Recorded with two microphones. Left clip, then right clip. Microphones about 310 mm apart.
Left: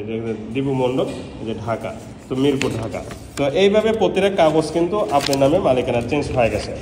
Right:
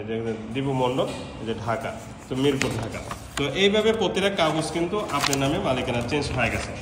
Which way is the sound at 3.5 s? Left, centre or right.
Right.